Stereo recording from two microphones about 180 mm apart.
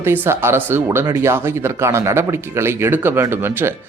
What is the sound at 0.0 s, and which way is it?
Speech, 15° right (ahead or behind).